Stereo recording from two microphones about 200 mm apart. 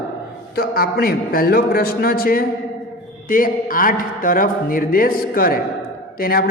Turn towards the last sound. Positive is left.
turn(degrees=45)  # may be behind; listen again after turning